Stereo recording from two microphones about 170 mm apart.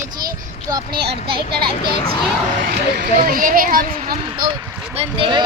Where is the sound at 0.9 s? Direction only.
65° right (ahead or behind).